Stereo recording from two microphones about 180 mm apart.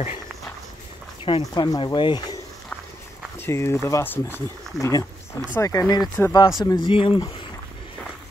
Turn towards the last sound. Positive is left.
turn(degrees=30)  # may be behind; listen again after turning